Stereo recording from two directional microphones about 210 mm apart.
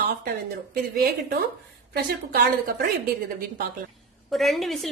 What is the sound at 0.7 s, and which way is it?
A woman's voice, 45° right (ahead or behind).